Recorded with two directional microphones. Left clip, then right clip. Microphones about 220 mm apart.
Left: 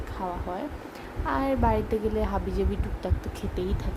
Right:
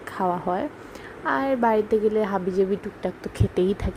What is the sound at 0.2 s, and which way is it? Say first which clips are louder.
A woman's voice: right 8 dB; 25° right (ahead or behind).